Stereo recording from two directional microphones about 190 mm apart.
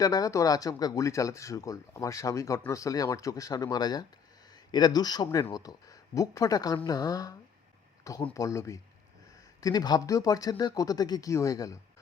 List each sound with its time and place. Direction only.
0.0 s speech: 20° left (ahead or behind)